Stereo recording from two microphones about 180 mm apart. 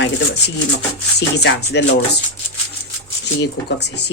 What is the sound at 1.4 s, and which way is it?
Speech, 70° left (ahead or behind).